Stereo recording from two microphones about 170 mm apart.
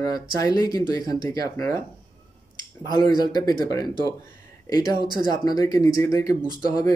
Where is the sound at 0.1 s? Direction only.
20° left (ahead or behind).